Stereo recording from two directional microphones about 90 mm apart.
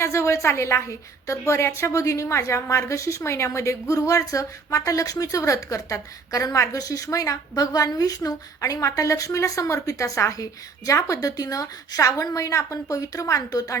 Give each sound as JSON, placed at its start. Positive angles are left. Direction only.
{"t": 0.0, "sound": "a woman's voice", "side_deg": 30}